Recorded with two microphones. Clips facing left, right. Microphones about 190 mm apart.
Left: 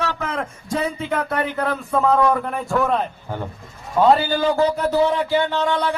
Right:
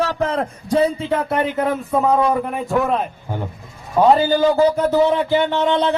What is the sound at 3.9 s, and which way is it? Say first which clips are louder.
Speech: right 2 dB; 15° right (ahead or behind).